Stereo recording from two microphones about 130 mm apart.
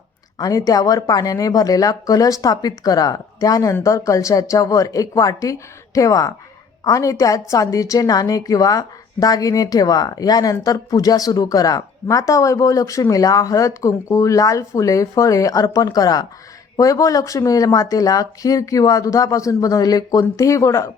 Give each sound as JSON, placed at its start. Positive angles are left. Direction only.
{"t": 0.3, "sound": "speech", "side_deg": 25}